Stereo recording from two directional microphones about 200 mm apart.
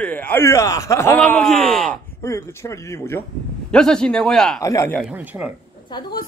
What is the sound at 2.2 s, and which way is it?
A man's voice, 15° left (ahead or behind).